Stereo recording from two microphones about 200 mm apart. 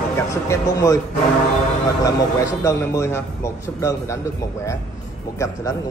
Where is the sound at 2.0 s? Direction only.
15° left (ahead or behind).